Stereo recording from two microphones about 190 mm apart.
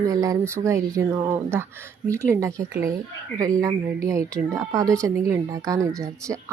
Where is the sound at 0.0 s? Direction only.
15° right (ahead or behind).